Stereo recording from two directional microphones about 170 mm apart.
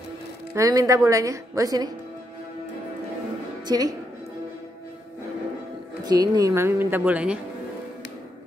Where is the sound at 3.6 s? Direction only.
20° right (ahead or behind).